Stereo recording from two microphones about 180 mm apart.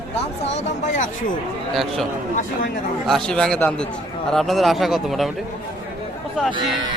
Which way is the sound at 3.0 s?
5° left (ahead or behind).